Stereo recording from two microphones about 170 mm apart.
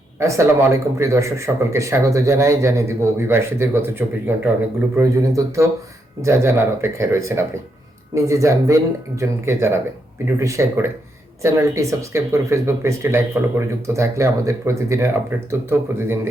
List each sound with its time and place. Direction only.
0.2 s a man's voice: 15° right (ahead or behind)